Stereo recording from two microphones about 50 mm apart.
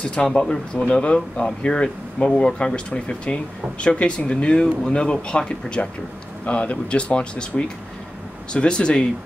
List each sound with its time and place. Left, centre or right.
0.0 s speech: left